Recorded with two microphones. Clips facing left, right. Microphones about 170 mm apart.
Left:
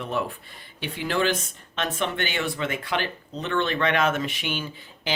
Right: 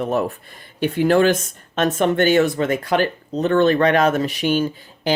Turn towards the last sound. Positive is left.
turn(degrees=-40)  # may be behind; listen again after turning